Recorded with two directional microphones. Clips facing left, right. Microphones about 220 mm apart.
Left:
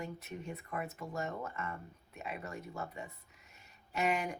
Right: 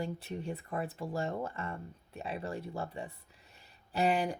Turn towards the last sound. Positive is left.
turn(degrees=-35)  # may be behind; listen again after turning